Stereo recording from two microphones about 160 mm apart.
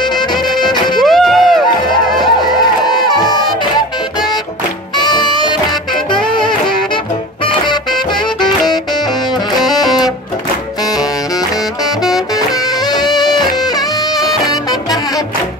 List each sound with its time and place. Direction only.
0.6 s music: 25° left (ahead or behind)
1.0 s music: centre (ahead or behind)
2.9 s music: 25° left (ahead or behind)
4.9 s music: 25° left (ahead or behind)
8.4 s music: 25° left (ahead or behind)
9.8 s music: 25° left (ahead or behind)
12.9 s music: 25° left (ahead or behind)